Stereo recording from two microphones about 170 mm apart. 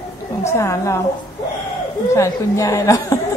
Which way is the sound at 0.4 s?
15° left (ahead or behind).